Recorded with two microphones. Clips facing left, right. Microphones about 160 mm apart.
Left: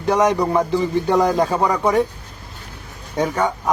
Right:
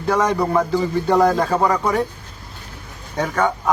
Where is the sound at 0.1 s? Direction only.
15° left (ahead or behind).